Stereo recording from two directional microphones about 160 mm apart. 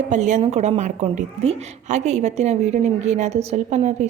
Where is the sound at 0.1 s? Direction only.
50° right (ahead or behind).